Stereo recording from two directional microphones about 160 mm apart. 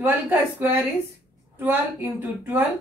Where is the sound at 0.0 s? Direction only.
15° right (ahead or behind).